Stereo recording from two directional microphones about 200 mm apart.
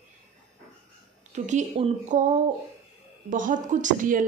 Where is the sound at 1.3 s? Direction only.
35° right (ahead or behind).